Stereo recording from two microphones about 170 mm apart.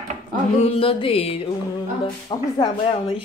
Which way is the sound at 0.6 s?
35° left (ahead or behind).